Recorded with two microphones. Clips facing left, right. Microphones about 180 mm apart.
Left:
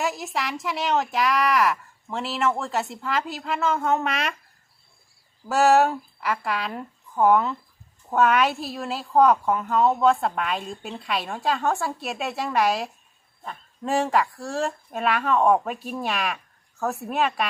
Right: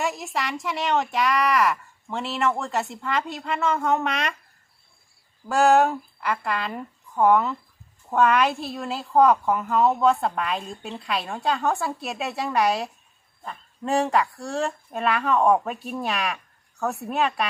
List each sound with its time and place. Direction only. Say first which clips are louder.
0.0 s a woman's voice: even; centre (ahead or behind)
5.5 s a woman's voice: even; centre (ahead or behind)